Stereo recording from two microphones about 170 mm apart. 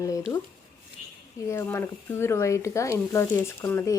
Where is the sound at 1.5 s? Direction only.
15° left (ahead or behind).